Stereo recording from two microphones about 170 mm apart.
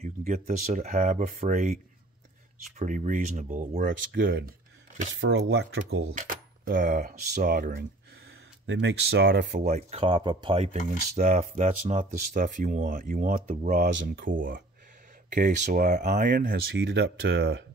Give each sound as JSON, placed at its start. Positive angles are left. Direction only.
{"t": 0.0, "sound": "speech", "side_deg": -45}
{"t": 2.8, "sound": "speech", "side_deg": -50}
{"t": 4.1, "sound": "speech", "side_deg": -65}
{"t": 5.1, "sound": "speech", "side_deg": -90}
{"t": 6.1, "sound": "speech", "side_deg": -55}
{"t": 8.6, "sound": "speech", "side_deg": -90}
{"t": 9.6, "sound": "speech", "side_deg": -45}
{"t": 13.1, "sound": "speech", "side_deg": -55}
{"t": 13.9, "sound": "speech", "side_deg": -65}